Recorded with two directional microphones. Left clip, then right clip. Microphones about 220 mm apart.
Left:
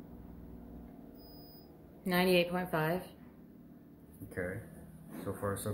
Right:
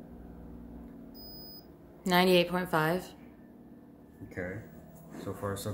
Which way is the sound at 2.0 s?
20° right (ahead or behind).